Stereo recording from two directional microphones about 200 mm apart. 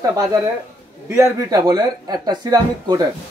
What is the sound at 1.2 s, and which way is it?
Speech, 15° right (ahead or behind).